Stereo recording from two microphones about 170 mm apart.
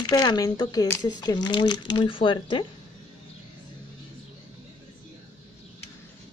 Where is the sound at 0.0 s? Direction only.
25° left (ahead or behind).